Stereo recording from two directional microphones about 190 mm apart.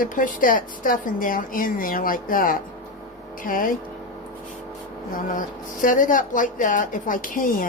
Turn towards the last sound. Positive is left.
turn(degrees=45)  # may be behind; listen again after turning